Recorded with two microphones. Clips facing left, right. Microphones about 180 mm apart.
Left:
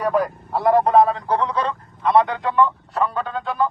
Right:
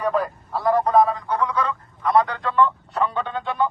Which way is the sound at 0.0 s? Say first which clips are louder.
Left 2 dB; 15° left (ahead or behind).